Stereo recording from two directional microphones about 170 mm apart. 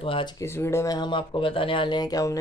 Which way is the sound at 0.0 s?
30° left (ahead or behind).